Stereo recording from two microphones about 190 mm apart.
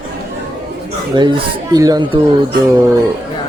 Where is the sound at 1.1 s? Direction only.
20° right (ahead or behind).